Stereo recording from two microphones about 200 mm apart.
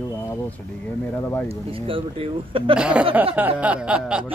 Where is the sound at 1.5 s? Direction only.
25° right (ahead or behind).